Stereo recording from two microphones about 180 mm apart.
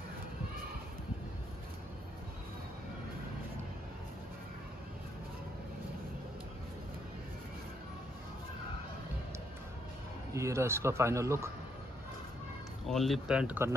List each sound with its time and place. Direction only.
10.3 s a man's voice: 15° right (ahead or behind)
12.8 s speech: centre (ahead or behind)